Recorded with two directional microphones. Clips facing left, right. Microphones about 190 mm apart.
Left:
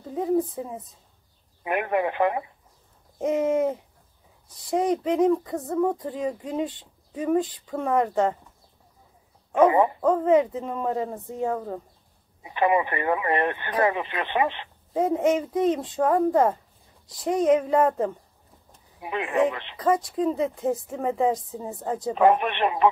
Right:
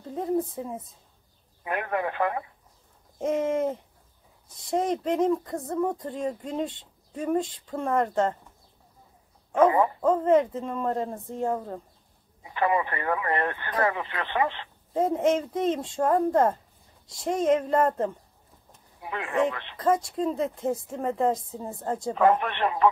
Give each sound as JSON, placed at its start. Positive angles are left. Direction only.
{"t": 0.0, "sound": "a sound", "side_deg": 5}
{"t": 1.6, "sound": "speech", "side_deg": 20}
{"t": 3.2, "sound": "a woman's voice", "side_deg": 5}
{"t": 9.5, "sound": "speech", "side_deg": 20}
{"t": 10.0, "sound": "a woman's voice", "side_deg": 5}
{"t": 12.4, "sound": "speech", "side_deg": 20}
{"t": 15.0, "sound": "speech", "side_deg": 5}
{"t": 18.9, "sound": "speech", "side_deg": 20}
{"t": 19.8, "sound": "a woman's voice", "side_deg": 5}
{"t": 22.1, "sound": "speech", "side_deg": 20}